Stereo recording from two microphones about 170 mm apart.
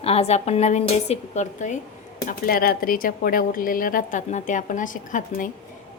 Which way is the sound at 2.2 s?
60° left (ahead or behind).